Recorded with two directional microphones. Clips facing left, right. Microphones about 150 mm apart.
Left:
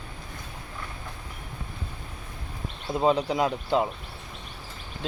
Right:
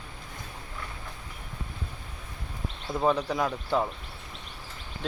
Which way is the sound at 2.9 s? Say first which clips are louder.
Left 3 dB; 20° left (ahead or behind).